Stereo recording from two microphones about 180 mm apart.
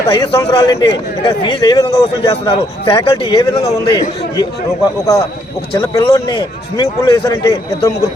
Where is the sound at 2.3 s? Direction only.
30° left (ahead or behind).